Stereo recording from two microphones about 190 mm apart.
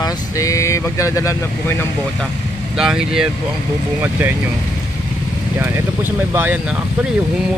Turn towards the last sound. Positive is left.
turn(degrees=-10)  # may be behind; listen again after turning